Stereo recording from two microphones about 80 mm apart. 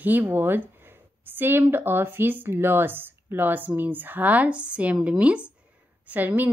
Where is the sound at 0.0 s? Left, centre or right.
Right.